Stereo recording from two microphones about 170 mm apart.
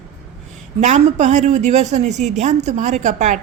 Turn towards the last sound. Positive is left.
turn(degrees=-45)  # may be behind; listen again after turning